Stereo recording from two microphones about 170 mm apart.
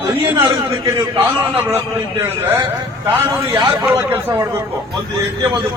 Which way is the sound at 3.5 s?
20° right (ahead or behind).